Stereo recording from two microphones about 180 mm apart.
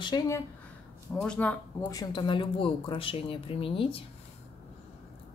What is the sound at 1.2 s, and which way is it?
Speech, 5° left (ahead or behind).